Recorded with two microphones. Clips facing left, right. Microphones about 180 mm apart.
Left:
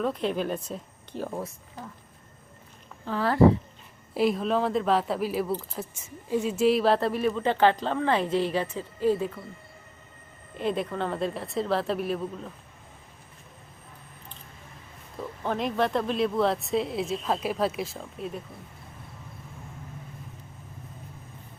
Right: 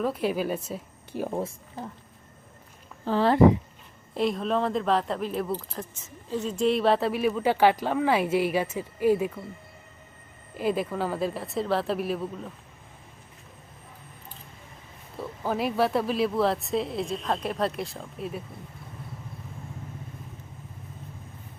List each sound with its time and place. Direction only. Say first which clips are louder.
0.0 s speech: right 1 dB; 5° right (ahead or behind)
1.4 s speech: right 4 dB; 25° right (ahead or behind)
3.1 s speech: right 2 dB; 25° right (ahead or behind)
4.1 s speech: left 1 dB; 5° left (ahead or behind); by 9.4 s 10° right (ahead or behind)
10.6 s speech: right 1 dB; 5° right (ahead or behind)
15.2 s speech: right 1 dB; 5° right (ahead or behind)